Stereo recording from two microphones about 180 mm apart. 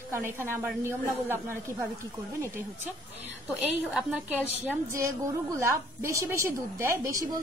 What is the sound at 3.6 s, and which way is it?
A woman's voice, 5° right (ahead or behind).